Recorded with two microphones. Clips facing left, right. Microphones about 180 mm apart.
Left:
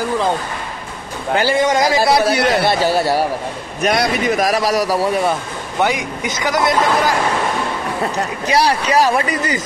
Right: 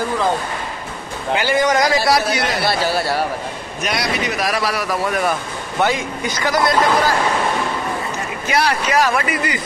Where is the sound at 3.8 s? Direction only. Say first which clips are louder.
Left 5 dB; 50° left (ahead or behind); by 7.1 s 20° left (ahead or behind).